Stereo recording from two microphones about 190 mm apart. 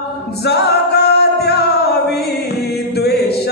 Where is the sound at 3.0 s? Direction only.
55° left (ahead or behind).